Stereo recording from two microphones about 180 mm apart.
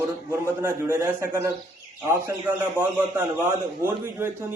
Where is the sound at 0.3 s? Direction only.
15° right (ahead or behind).